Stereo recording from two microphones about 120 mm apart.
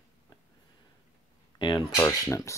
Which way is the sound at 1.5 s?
40° left (ahead or behind).